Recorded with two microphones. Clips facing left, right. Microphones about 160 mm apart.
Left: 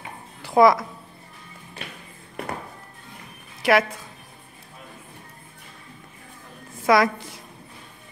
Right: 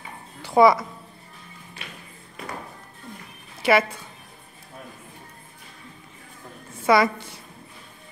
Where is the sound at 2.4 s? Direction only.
60° left (ahead or behind).